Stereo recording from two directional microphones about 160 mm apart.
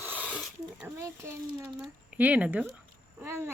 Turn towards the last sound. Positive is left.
turn(degrees=-15)  # may be behind; listen again after turning